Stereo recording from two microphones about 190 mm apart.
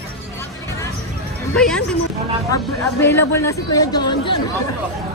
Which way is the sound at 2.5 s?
10° left (ahead or behind).